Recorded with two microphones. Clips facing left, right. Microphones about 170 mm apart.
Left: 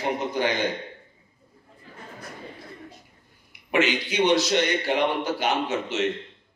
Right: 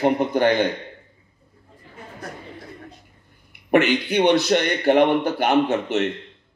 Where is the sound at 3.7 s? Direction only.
60° right (ahead or behind).